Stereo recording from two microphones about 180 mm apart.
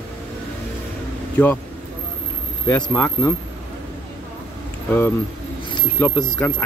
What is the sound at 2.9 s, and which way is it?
Speech, 10° left (ahead or behind).